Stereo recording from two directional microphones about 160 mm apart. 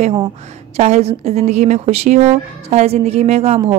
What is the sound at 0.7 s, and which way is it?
A woman's voice, 45° right (ahead or behind).